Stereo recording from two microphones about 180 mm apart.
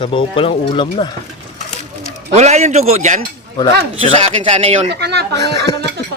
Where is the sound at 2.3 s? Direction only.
40° right (ahead or behind).